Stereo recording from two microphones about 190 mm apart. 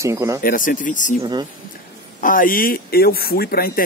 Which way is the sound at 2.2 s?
45° left (ahead or behind).